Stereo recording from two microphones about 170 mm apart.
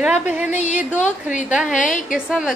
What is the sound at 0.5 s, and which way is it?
A woman's voice, 45° left (ahead or behind).